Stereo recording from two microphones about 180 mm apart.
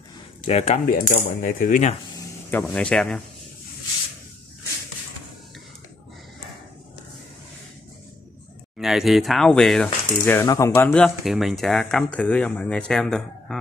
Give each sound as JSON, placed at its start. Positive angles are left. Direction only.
{"t": 0.4, "sound": "coin", "side_deg": 40}
{"t": 2.1, "sound": "speech", "side_deg": 10}
{"t": 8.7, "sound": "speech", "side_deg": 0}
{"t": 10.2, "sound": "speech", "side_deg": 15}